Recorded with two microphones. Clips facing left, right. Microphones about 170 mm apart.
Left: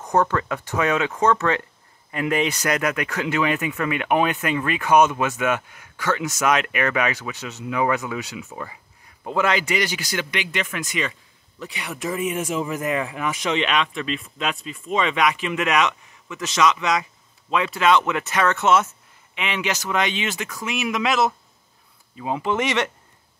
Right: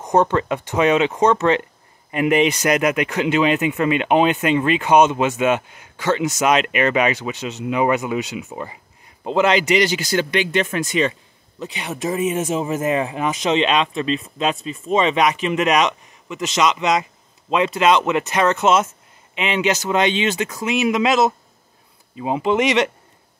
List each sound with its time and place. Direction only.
0.0 s speech: 20° right (ahead or behind)